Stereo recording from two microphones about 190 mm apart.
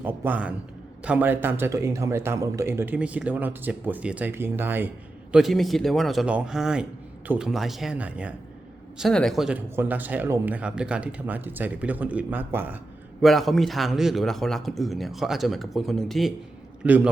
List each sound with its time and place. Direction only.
0.0 s a man's voice: 10° right (ahead or behind)
13.2 s a man's voice: centre (ahead or behind)